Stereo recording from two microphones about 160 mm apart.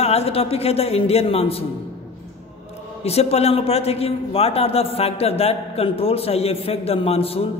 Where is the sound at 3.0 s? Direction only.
40° left (ahead or behind).